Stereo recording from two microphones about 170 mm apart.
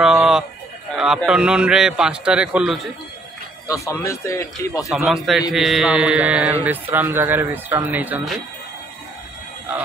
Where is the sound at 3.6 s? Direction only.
15° left (ahead or behind).